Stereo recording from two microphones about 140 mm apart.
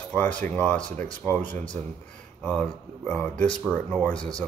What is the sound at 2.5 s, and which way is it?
Speech, 5° left (ahead or behind).